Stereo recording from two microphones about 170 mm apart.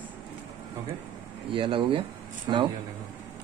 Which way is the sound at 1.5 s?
30° right (ahead or behind).